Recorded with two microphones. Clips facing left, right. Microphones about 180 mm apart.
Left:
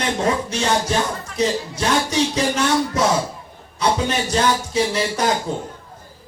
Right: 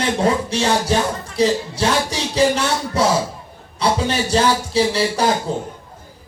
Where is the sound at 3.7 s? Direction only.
30° right (ahead or behind).